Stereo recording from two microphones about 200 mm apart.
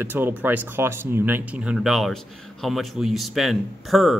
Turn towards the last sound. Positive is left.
turn(degrees=0)  # may be behind; listen again after turning